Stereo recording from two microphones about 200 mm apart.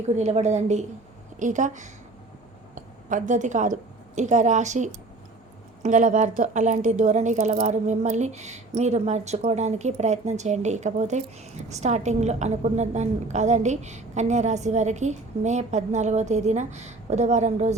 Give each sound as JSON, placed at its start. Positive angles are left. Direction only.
{"t": 0.2, "sound": "a woman's voice", "side_deg": -35}